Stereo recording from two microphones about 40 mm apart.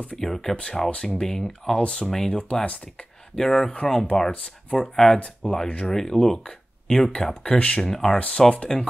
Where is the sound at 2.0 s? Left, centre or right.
Centre.